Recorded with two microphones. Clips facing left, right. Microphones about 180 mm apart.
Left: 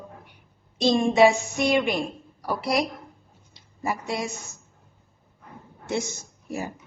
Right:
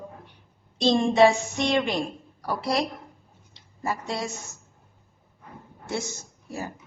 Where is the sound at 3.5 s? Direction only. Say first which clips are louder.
Left 1 dB; 15° left (ahead or behind).